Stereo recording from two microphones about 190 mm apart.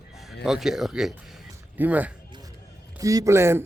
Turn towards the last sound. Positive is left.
turn(degrees=-15)  # may be behind; listen again after turning